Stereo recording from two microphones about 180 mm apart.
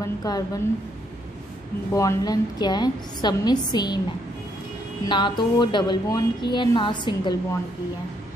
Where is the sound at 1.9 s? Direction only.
20° left (ahead or behind).